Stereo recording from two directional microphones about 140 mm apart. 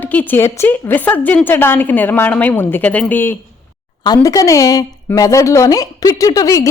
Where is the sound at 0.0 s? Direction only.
10° left (ahead or behind).